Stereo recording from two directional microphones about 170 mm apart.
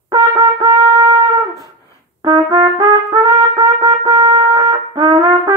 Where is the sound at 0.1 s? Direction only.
25° right (ahead or behind).